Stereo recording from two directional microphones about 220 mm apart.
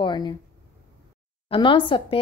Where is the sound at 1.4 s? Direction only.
25° left (ahead or behind).